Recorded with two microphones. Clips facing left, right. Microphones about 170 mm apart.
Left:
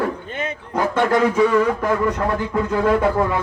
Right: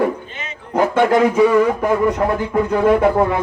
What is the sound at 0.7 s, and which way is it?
A man's voice, 15° right (ahead or behind).